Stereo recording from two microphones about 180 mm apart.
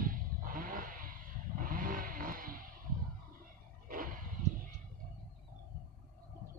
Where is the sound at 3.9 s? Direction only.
50° right (ahead or behind).